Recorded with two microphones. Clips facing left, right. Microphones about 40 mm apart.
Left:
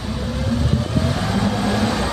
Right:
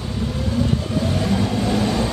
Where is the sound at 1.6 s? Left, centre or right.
Left.